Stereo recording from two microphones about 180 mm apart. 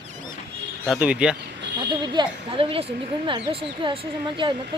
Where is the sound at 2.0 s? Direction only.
25° right (ahead or behind).